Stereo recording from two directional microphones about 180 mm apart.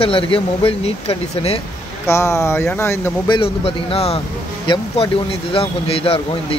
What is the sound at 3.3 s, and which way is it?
Speech, 30° left (ahead or behind).